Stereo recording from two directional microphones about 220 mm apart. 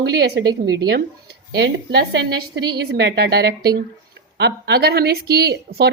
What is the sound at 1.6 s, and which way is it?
Speech, 50° right (ahead or behind).